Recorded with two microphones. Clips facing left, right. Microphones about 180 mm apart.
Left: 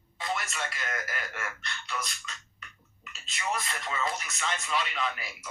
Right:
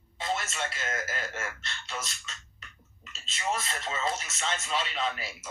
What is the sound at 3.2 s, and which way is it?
Speech, 25° right (ahead or behind).